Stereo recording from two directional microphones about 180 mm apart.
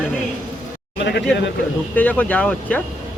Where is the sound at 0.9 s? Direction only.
75° left (ahead or behind).